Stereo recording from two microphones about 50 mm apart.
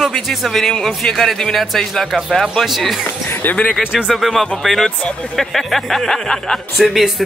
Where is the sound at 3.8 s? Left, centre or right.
Centre.